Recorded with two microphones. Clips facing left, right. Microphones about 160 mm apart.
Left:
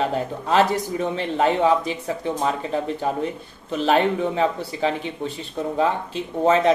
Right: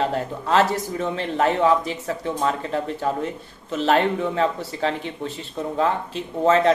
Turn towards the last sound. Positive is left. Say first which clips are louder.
# even
turn(degrees=15)  # may be behind; listen again after turning